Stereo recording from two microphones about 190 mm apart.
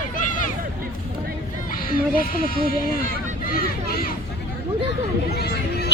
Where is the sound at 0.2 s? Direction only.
45° left (ahead or behind).